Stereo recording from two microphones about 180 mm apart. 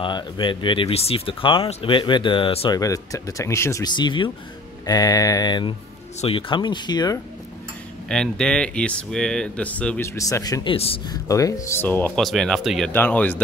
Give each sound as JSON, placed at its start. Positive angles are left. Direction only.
{"t": 0.0, "sound": "speech", "side_deg": 25}
{"t": 2.8, "sound": "speech", "side_deg": 20}
{"t": 8.1, "sound": "speech", "side_deg": 5}
{"t": 11.2, "sound": "speech", "side_deg": 20}